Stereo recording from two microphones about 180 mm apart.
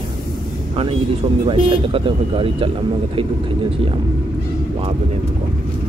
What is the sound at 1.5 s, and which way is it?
Speech, 30° right (ahead or behind).